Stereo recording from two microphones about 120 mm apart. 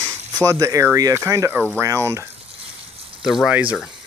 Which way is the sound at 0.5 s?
25° right (ahead or behind).